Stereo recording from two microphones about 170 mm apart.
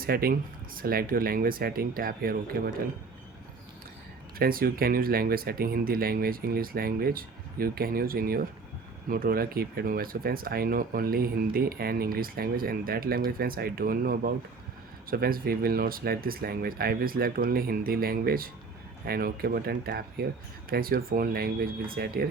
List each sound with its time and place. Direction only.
0.0 s speech: 60° right (ahead or behind)
4.4 s speech: 60° right (ahead or behind)